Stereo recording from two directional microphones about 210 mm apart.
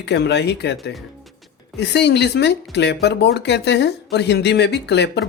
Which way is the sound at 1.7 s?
55° left (ahead or behind).